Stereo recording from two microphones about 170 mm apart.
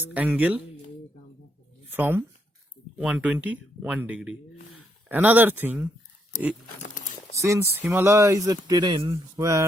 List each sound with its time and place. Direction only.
0.0 s speech: 10° right (ahead or behind)
2.0 s speech: 10° right (ahead or behind)
7.3 s speech: 15° right (ahead or behind)